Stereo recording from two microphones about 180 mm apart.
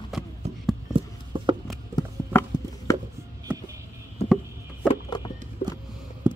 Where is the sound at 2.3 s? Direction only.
10° left (ahead or behind).